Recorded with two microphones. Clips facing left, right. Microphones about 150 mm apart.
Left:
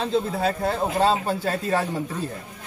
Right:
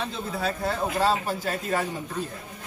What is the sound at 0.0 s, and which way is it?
A man's voice, 30° left (ahead or behind).